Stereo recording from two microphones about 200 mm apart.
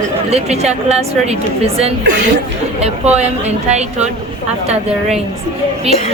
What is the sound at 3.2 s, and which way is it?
Speech, 35° right (ahead or behind).